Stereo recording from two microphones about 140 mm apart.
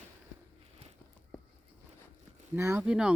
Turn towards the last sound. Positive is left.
turn(degrees=-5)  # may be behind; listen again after turning